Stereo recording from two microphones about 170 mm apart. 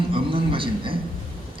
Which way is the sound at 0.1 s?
30° right (ahead or behind).